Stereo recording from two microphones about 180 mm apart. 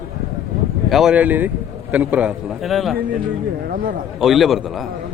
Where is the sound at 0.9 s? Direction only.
5° right (ahead or behind).